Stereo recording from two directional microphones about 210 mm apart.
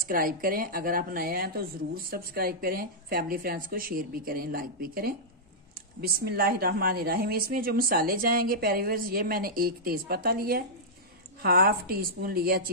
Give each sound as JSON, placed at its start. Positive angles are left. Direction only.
{"t": 0.1, "sound": "a woman's voice", "side_deg": -45}